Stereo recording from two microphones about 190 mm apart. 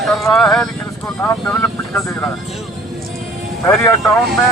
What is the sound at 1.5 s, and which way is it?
Speech, 15° left (ahead or behind).